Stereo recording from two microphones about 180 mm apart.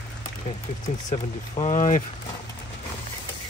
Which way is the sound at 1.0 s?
35° left (ahead or behind).